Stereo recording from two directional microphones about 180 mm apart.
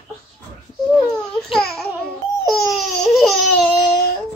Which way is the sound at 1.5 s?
5° left (ahead or behind).